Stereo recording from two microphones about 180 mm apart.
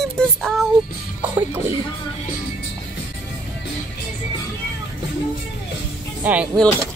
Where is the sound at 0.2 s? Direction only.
5° left (ahead or behind).